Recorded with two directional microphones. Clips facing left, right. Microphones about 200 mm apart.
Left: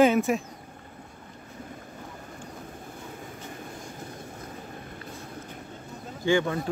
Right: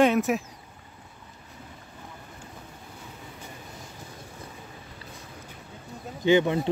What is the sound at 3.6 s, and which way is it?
Vehicle, 50° left (ahead or behind).